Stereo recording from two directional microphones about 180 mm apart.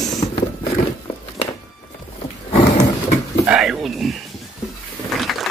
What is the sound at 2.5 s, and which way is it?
Horse, 25° left (ahead or behind).